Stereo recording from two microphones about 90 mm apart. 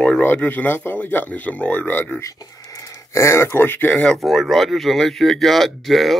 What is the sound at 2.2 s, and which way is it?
Speech, 40° left (ahead or behind).